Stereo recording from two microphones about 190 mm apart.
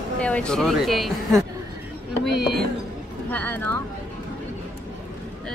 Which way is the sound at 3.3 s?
10° left (ahead or behind).